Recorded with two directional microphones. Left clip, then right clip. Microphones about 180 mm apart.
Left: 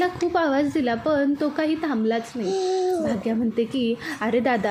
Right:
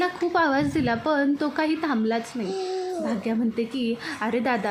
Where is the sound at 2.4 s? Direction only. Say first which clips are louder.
Left 5 dB; 60° left (ahead or behind).